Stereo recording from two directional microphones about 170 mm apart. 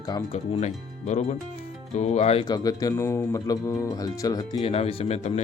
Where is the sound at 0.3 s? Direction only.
40° left (ahead or behind).